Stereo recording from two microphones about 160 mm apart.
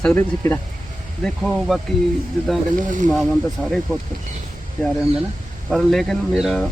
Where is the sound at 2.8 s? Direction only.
55° right (ahead or behind).